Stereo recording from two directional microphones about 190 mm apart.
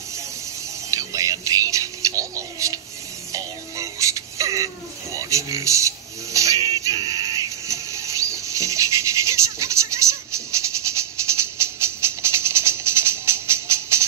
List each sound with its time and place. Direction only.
0.8 s music: 15° right (ahead or behind)
5.1 s speech: 15° right (ahead or behind)
6.8 s a sound: 20° right (ahead or behind)
11.0 s music: 15° right (ahead or behind)